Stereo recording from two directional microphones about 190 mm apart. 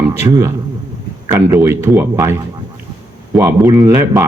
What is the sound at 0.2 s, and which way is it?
Speech, 15° right (ahead or behind).